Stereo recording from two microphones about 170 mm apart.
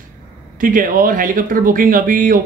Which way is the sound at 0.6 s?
55° right (ahead or behind).